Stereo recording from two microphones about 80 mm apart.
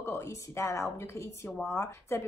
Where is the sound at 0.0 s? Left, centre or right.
Left.